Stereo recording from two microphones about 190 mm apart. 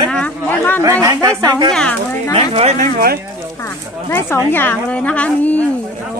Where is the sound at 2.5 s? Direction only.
35° right (ahead or behind).